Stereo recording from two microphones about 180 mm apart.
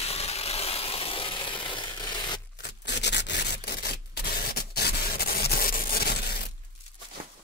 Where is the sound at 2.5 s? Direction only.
70° left (ahead or behind).